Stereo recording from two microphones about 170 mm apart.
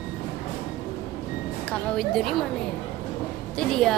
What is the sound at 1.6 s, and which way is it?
Speech, centre (ahead or behind).